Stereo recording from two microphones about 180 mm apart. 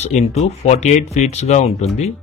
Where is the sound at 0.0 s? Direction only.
35° left (ahead or behind).